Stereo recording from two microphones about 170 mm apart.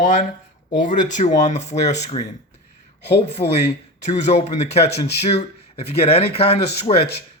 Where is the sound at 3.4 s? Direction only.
25° left (ahead or behind).